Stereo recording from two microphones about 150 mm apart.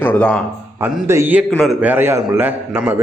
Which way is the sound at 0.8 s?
15° right (ahead or behind).